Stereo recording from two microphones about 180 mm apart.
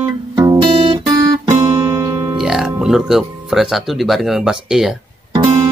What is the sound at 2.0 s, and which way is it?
Guitar, 20° right (ahead or behind).